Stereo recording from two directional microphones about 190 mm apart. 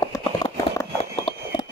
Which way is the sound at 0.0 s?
15° left (ahead or behind).